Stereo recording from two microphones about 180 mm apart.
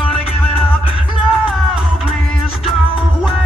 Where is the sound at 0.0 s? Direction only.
30° left (ahead or behind).